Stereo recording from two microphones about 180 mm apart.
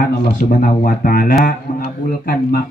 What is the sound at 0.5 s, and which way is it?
Speech, 50° left (ahead or behind).